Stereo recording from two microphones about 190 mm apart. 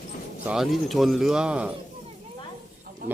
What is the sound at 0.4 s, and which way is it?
Speech, centre (ahead or behind).